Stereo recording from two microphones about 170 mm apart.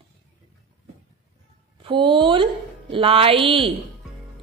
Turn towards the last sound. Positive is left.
turn(degrees=-30)  # may be behind; listen again after turning